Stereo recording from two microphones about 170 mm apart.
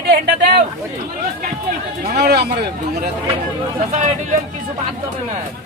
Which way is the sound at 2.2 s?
75° right (ahead or behind).